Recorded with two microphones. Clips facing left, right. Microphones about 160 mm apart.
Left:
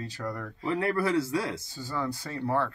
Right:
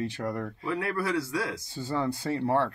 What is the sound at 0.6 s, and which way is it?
Speech, 30° left (ahead or behind).